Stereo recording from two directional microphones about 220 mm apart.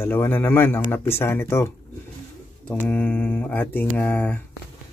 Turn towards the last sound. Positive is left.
turn(degrees=5)  # may be behind; listen again after turning